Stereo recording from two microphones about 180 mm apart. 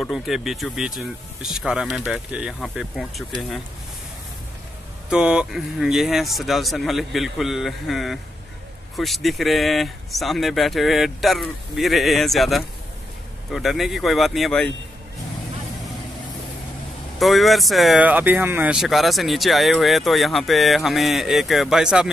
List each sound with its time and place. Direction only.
0.0 s speech: centre (ahead or behind)
5.1 s speech: 5° right (ahead or behind)
17.2 s speech: centre (ahead or behind)